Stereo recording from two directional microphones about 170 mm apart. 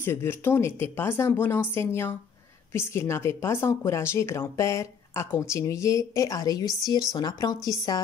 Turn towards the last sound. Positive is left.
turn(degrees=20)  # may be behind; listen again after turning